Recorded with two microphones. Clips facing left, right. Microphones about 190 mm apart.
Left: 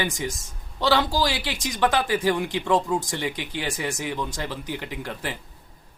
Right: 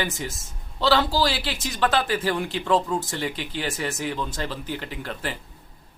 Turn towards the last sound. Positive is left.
turn(degrees=15)  # may be behind; listen again after turning